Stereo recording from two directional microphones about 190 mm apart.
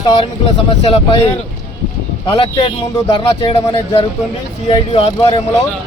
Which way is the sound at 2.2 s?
25° left (ahead or behind).